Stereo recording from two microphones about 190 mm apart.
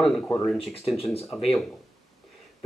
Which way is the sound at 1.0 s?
30° left (ahead or behind).